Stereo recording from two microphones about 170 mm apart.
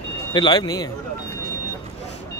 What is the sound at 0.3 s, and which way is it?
Speech, 30° left (ahead or behind).